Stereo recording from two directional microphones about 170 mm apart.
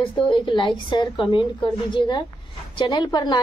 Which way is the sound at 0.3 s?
30° left (ahead or behind).